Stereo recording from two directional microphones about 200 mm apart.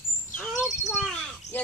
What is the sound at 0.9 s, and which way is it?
Cricket, centre (ahead or behind).